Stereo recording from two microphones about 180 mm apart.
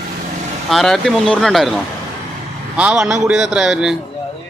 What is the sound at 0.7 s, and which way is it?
Speech, centre (ahead or behind).